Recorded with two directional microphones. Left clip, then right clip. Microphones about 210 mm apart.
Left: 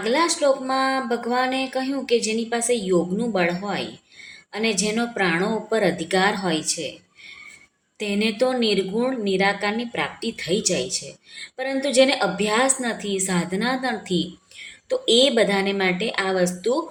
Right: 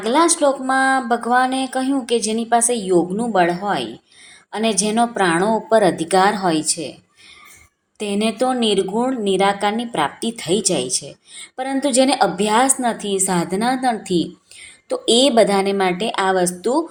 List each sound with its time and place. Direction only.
0.0 s a woman's voice: 15° right (ahead or behind)
7.9 s a woman's voice: 20° right (ahead or behind)